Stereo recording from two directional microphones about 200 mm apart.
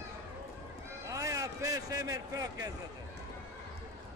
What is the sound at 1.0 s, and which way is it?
A man's voice, 15° right (ahead or behind).